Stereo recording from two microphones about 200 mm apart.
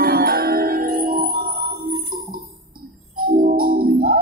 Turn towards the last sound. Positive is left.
turn(degrees=-50)  # may be behind; listen again after turning